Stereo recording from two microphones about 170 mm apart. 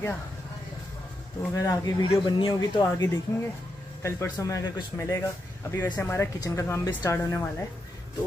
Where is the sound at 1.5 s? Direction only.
20° left (ahead or behind).